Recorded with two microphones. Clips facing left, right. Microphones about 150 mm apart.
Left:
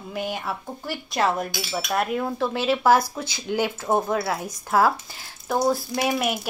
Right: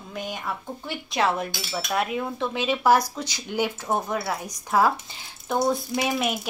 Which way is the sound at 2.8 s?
15° right (ahead or behind).